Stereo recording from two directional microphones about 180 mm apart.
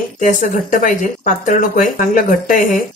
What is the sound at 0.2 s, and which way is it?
Speech, 45° left (ahead or behind).